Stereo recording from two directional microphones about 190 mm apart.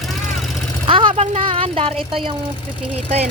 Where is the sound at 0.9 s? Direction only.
25° right (ahead or behind).